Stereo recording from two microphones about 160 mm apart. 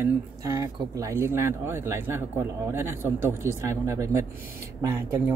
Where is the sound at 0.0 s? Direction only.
20° right (ahead or behind).